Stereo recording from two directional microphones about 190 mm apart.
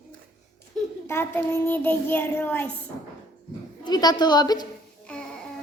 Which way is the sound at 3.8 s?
20° left (ahead or behind).